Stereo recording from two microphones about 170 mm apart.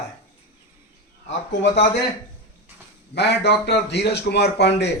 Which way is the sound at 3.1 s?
75° left (ahead or behind).